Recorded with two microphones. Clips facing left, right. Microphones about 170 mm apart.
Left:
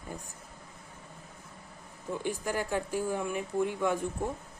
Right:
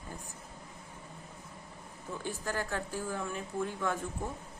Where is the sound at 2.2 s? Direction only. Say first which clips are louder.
Left 3 dB; 15° left (ahead or behind).